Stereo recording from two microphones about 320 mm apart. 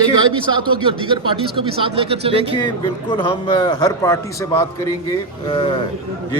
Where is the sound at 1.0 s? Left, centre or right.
Centre.